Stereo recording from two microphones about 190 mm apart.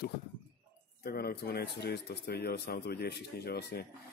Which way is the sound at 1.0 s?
55° left (ahead or behind).